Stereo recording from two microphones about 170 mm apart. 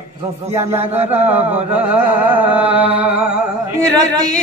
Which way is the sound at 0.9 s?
10° right (ahead or behind).